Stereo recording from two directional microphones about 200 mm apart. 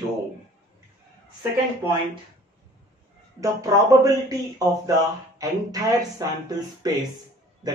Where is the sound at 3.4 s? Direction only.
15° right (ahead or behind).